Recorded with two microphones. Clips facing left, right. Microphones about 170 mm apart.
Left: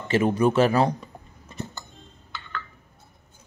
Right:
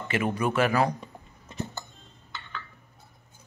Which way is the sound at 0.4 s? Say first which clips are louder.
Left 4 dB; 30° left (ahead or behind).